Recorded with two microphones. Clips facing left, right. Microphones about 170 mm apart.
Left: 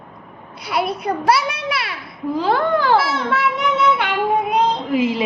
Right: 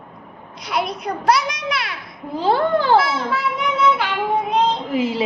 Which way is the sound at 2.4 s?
30° right (ahead or behind).